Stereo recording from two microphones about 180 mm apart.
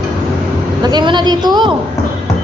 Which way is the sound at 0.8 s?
25° right (ahead or behind).